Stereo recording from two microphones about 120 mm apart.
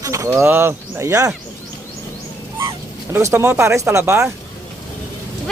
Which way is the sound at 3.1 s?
20° right (ahead or behind).